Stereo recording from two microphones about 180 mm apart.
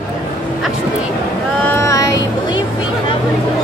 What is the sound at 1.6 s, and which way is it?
Child singing, 15° left (ahead or behind).